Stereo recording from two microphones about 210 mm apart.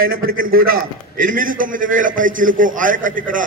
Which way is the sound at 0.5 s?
45° right (ahead or behind).